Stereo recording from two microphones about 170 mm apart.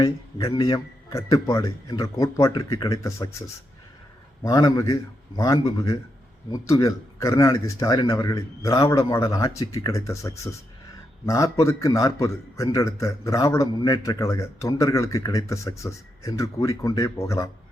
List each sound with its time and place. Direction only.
0.4 s a man's voice: 25° left (ahead or behind)
6.5 s a man's voice: 20° left (ahead or behind)